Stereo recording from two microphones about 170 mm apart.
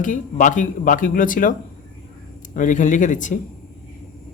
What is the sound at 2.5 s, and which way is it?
Speech, 50° left (ahead or behind).